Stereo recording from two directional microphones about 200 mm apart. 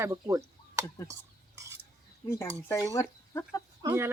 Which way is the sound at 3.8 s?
20° right (ahead or behind).